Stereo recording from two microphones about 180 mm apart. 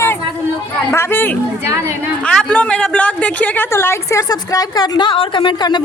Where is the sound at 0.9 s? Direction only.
10° left (ahead or behind).